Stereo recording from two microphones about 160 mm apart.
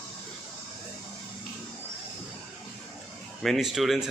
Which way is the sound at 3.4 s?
Centre (ahead or behind).